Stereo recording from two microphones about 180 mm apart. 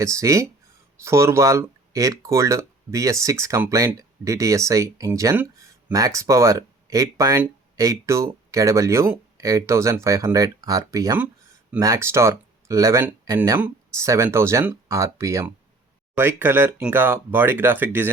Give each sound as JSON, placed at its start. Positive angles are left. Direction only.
{"t": 0.0, "sound": "speech", "side_deg": -15}